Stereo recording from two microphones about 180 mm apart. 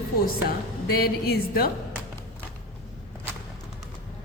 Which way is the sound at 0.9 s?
55° left (ahead or behind).